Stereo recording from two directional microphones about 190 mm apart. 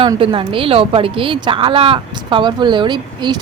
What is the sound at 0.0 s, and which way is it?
A woman's voice, 25° right (ahead or behind).